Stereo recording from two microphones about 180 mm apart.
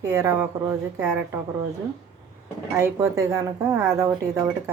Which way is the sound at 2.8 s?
15° right (ahead or behind).